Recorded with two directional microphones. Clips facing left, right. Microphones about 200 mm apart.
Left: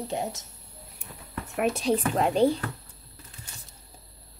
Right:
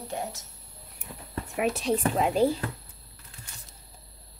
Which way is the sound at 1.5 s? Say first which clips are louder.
Left 2 dB; centre (ahead or behind).